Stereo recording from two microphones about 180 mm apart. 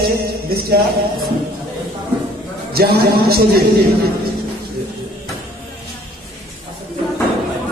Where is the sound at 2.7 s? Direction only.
60° right (ahead or behind).